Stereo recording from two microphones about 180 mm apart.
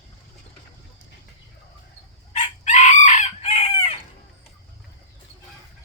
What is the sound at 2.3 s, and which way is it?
Chicken, 40° left (ahead or behind).